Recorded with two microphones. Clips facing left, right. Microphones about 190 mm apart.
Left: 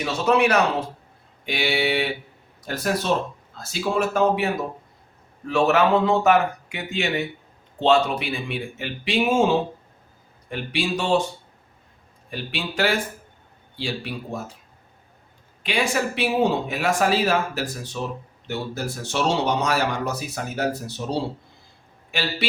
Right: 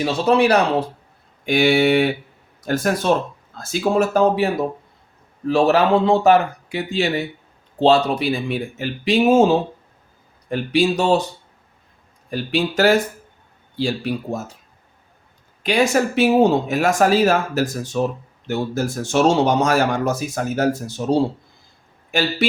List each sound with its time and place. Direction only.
0.0 s speech: 30° right (ahead or behind)
1.5 s speech: 45° right (ahead or behind)
5.5 s speech: 35° right (ahead or behind)
12.3 s speech: 40° right (ahead or behind)
15.6 s speech: 45° right (ahead or behind)